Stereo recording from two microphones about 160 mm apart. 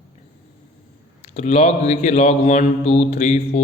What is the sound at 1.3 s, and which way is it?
A man's voice, 40° left (ahead or behind).